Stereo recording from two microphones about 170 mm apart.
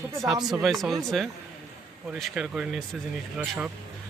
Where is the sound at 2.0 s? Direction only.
5° right (ahead or behind).